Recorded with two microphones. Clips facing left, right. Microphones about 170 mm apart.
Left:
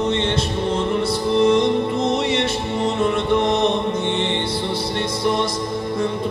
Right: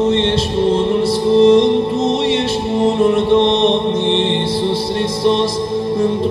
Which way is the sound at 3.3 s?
25° right (ahead or behind).